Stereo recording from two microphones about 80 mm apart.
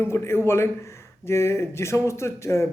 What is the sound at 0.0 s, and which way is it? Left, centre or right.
Speech, left.